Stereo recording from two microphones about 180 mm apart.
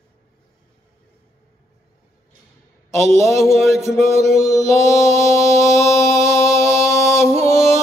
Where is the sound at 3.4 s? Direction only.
Centre (ahead or behind).